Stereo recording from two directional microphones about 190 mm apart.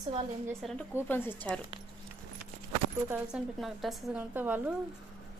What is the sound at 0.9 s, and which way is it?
Speech, 10° left (ahead or behind).